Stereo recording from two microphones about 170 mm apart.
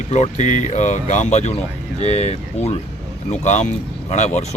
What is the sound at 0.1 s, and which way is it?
Speech, 45° left (ahead or behind).